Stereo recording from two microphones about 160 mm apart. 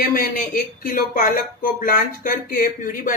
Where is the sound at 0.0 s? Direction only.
65° left (ahead or behind).